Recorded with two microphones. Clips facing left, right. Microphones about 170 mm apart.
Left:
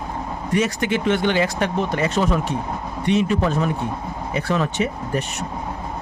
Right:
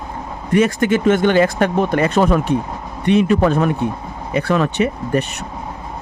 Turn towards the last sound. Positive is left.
turn(degrees=-65)  # may be behind; listen again after turning